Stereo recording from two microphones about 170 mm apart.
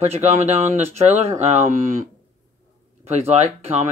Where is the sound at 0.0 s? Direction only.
40° right (ahead or behind).